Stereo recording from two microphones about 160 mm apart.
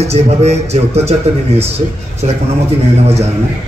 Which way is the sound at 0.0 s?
40° right (ahead or behind).